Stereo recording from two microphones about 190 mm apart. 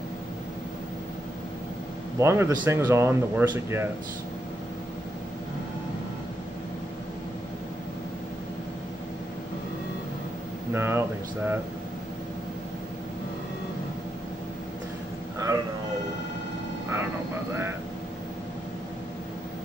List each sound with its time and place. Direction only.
2.1 s speech: 15° right (ahead or behind)
10.7 s speech: 15° right (ahead or behind)
15.3 s a sound: 20° right (ahead or behind)
16.9 s vehicle: 15° right (ahead or behind)